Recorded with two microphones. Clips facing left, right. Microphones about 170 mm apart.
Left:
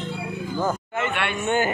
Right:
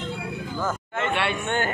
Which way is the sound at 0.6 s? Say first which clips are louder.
Left 3 dB; 10° left (ahead or behind).